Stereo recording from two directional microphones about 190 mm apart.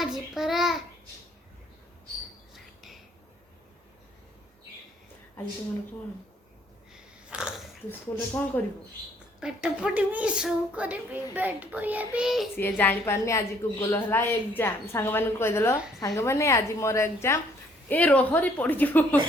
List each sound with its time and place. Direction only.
0.0 s a child's voice: centre (ahead or behind)
6.9 s sniff: 5° right (ahead or behind)
7.9 s a woman's voice: 10° left (ahead or behind)
9.4 s speech: 5° right (ahead or behind)
12.5 s a woman's voice: 10° left (ahead or behind)